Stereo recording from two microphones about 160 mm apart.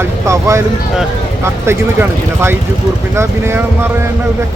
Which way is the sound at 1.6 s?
15° right (ahead or behind).